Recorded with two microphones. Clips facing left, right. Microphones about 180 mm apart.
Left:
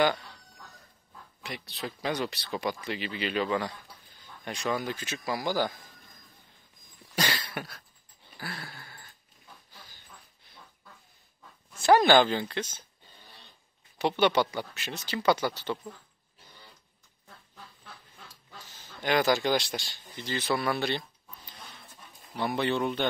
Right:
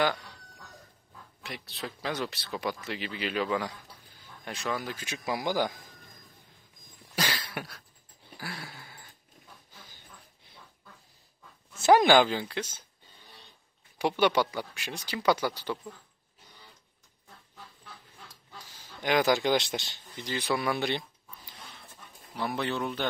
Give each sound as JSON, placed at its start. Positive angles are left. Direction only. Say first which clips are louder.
{"t": 1.4, "sound": "speech", "louder": "left 2 dB", "side_deg": 0}
{"t": 7.2, "sound": "a sound", "louder": "left 1 dB", "side_deg": -10}
{"t": 11.8, "sound": "speech", "louder": "even", "side_deg": -15}
{"t": 13.9, "sound": "speech", "louder": "left 1 dB", "side_deg": -10}
{"t": 18.7, "sound": "speech", "louder": "even", "side_deg": -10}
{"t": 22.4, "sound": "speech", "louder": "left 3 dB", "side_deg": 0}